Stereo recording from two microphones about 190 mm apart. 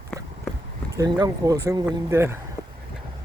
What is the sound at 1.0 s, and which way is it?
Speech, 20° right (ahead or behind).